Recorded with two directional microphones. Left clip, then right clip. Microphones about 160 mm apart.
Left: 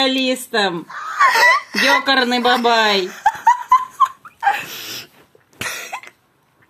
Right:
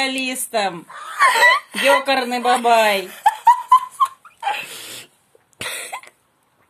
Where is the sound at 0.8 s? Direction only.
25° right (ahead or behind).